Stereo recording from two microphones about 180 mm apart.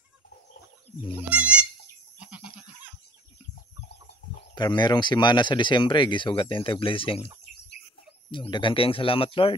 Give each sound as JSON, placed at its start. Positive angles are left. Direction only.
{"t": 1.1, "sound": "speech", "side_deg": -5}
{"t": 4.6, "sound": "speech", "side_deg": 25}
{"t": 8.3, "sound": "speech", "side_deg": 25}